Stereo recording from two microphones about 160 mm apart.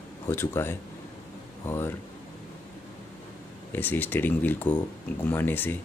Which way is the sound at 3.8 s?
10° left (ahead or behind).